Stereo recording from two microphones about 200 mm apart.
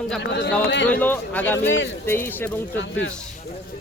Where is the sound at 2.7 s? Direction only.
70° left (ahead or behind).